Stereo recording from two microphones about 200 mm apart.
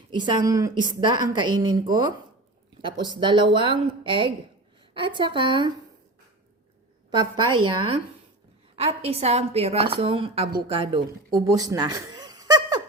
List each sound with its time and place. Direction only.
0.1 s a woman's voice: 20° right (ahead or behind)
7.1 s a woman's voice: 25° right (ahead or behind)